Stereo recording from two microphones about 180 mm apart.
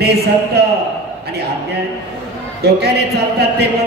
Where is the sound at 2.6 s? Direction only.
65° right (ahead or behind).